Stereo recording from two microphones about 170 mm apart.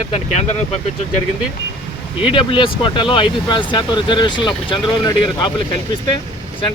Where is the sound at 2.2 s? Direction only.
30° left (ahead or behind).